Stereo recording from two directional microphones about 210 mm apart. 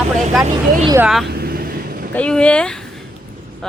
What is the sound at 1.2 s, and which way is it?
Vehicle, 45° right (ahead or behind).